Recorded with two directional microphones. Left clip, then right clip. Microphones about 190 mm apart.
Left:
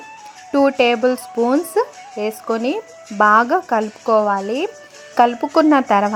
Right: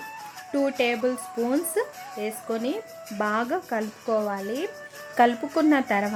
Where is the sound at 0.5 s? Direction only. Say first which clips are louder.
Left 10 dB; 20° left (ahead or behind).